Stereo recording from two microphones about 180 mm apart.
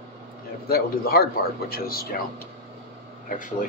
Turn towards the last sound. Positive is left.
turn(degrees=50)  # may be behind; listen again after turning